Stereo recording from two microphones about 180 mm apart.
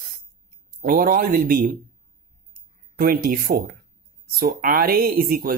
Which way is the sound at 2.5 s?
55° right (ahead or behind).